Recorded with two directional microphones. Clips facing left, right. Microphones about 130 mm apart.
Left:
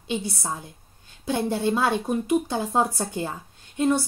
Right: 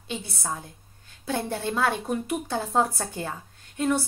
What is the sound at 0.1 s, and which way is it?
A woman's voice, 20° left (ahead or behind).